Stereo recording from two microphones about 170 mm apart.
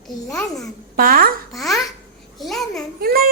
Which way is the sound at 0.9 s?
60° right (ahead or behind).